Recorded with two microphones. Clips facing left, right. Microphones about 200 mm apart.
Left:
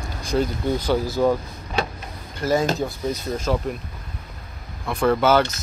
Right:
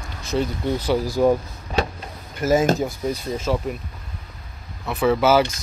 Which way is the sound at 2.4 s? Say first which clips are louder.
Right 2 dB; 20° right (ahead or behind).